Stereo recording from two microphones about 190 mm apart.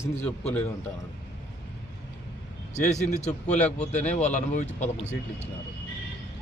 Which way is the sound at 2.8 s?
40° left (ahead or behind).